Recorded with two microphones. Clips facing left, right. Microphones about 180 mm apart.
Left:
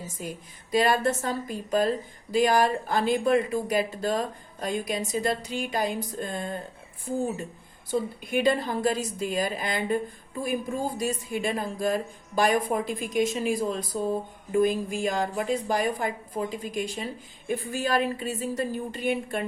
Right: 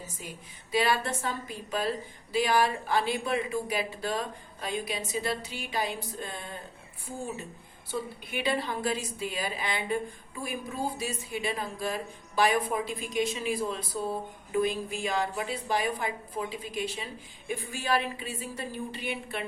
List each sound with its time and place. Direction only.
0.2 s speech: 45° left (ahead or behind)
7.9 s speech: 45° left (ahead or behind)